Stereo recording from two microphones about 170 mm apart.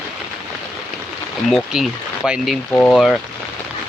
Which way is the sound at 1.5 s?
5° right (ahead or behind).